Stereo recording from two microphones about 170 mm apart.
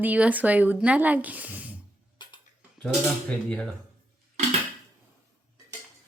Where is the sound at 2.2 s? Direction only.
25° left (ahead or behind).